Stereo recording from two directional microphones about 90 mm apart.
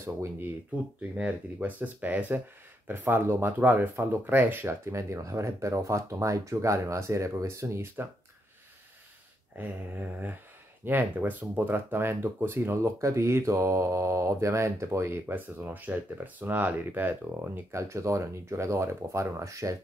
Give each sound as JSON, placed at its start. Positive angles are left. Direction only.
{"t": 0.0, "sound": "speech", "side_deg": -30}
{"t": 1.1, "sound": "speech", "side_deg": -15}
{"t": 9.6, "sound": "a sound", "side_deg": -20}
{"t": 10.9, "sound": "speech", "side_deg": -20}